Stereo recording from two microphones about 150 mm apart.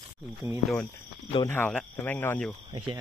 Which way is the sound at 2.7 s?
30° right (ahead or behind).